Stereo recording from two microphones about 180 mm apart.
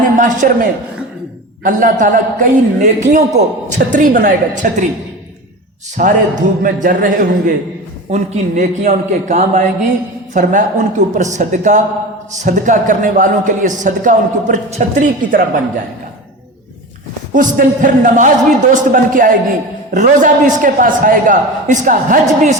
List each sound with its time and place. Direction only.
0.2 s a man's voice: 50° right (ahead or behind)
6.0 s a man's voice: 45° right (ahead or behind)
17.3 s a man's voice: 45° right (ahead or behind)